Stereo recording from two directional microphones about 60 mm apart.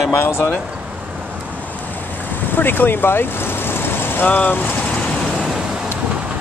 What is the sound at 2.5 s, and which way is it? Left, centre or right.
Speech, left.